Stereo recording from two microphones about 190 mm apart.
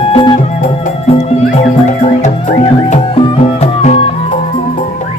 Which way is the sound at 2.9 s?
30° left (ahead or behind).